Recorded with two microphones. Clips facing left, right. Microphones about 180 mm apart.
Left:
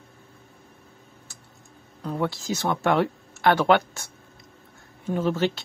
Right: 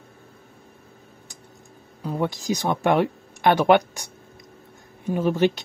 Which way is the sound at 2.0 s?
15° right (ahead or behind).